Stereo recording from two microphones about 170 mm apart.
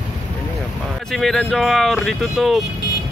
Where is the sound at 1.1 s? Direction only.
Centre (ahead or behind).